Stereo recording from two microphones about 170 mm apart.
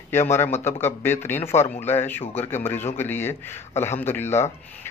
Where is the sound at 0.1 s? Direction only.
15° left (ahead or behind).